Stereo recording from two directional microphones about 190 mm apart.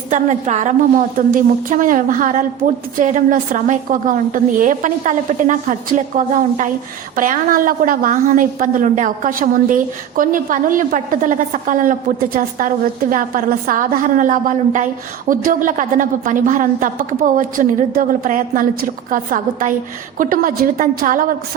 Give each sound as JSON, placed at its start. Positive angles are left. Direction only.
{"t": 0.1, "sound": "a woman's voice", "side_deg": -40}